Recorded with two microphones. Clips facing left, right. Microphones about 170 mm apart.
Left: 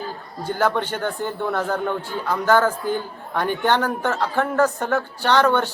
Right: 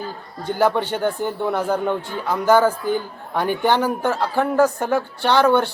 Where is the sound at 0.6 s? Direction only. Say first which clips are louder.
Right 3 dB; 10° right (ahead or behind).